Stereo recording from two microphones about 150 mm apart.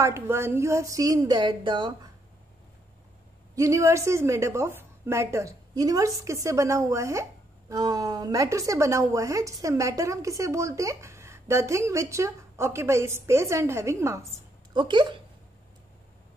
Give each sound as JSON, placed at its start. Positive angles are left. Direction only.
{"t": 0.0, "sound": "a woman's voice", "side_deg": -20}
{"t": 3.5, "sound": "a woman's voice", "side_deg": -20}
{"t": 14.7, "sound": "speech", "side_deg": -30}